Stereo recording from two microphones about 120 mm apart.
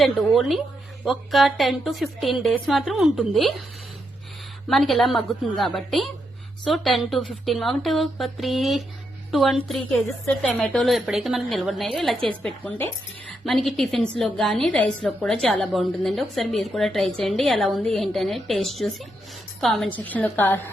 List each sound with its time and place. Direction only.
0.3 s a woman's voice: centre (ahead or behind)
4.7 s a woman's voice: centre (ahead or behind)
13.2 s a woman's voice: centre (ahead or behind)
19.9 s a woman's voice: 15° left (ahead or behind)